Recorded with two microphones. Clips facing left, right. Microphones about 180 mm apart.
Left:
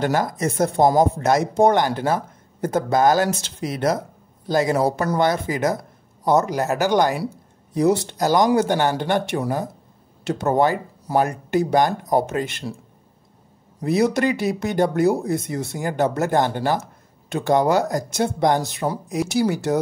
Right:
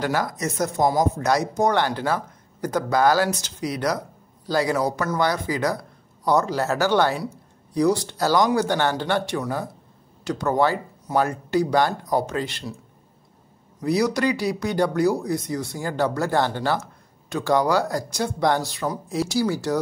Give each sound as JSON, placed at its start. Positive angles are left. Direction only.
{"t": 0.3, "sound": "speech", "side_deg": 30}
{"t": 1.8, "sound": "speech", "side_deg": 15}
{"t": 13.7, "sound": "speech", "side_deg": 25}